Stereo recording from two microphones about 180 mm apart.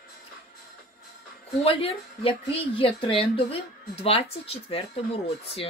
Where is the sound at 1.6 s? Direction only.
35° left (ahead or behind).